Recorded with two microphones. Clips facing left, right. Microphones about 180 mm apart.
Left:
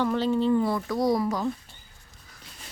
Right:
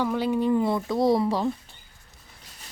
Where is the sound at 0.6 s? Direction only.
25° right (ahead or behind).